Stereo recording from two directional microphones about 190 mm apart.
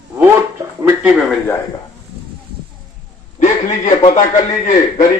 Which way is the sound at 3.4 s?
40° left (ahead or behind).